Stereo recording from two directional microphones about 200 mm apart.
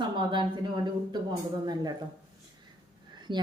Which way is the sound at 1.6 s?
20° right (ahead or behind).